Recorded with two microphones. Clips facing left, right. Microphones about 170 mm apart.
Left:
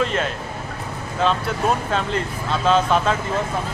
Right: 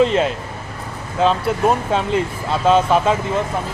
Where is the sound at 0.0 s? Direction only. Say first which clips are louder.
Right 7 dB; 25° right (ahead or behind).